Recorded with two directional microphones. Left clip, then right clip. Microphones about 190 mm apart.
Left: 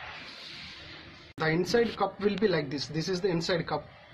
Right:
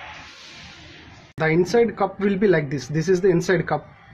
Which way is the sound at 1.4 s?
30° right (ahead or behind).